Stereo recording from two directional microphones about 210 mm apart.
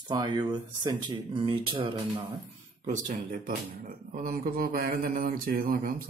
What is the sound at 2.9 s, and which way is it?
Speech, 35° right (ahead or behind).